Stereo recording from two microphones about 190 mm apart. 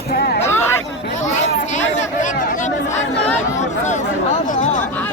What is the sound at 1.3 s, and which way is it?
Chatter, 40° left (ahead or behind).